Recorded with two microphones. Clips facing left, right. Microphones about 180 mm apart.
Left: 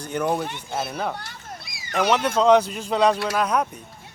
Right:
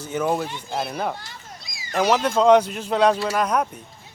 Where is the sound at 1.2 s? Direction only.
60° left (ahead or behind).